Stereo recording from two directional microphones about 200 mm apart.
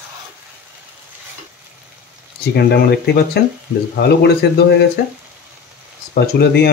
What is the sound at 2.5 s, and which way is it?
A man's voice, 55° left (ahead or behind).